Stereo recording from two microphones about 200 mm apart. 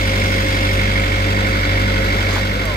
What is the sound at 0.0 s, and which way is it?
Vehicle, 50° left (ahead or behind).